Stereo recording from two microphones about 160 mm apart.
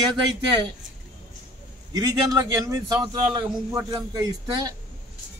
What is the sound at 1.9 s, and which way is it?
A man's voice, 25° right (ahead or behind).